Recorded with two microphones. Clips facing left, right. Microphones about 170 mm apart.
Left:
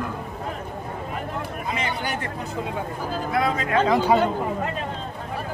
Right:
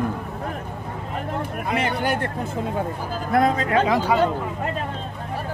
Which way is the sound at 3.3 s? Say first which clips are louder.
Right 5 dB; 45° right (ahead or behind).